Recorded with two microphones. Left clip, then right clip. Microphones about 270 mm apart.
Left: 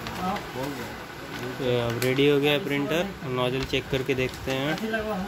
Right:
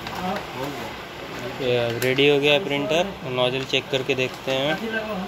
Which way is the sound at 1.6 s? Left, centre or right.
Left.